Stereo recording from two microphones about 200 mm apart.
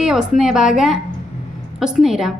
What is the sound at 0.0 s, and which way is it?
A woman's voice, 5° right (ahead or behind).